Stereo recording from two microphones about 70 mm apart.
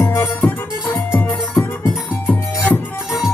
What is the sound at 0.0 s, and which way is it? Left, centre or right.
Music, left.